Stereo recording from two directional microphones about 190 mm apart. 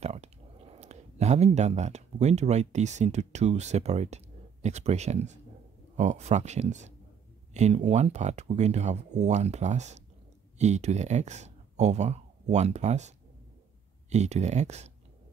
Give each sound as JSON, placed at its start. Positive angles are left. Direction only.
{"t": 0.0, "sound": "speech", "side_deg": -35}
{"t": 14.1, "sound": "speech", "side_deg": -35}